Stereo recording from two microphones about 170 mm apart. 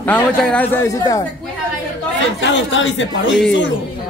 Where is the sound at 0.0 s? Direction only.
5° left (ahead or behind).